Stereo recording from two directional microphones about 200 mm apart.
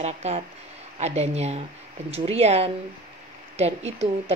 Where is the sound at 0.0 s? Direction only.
35° right (ahead or behind).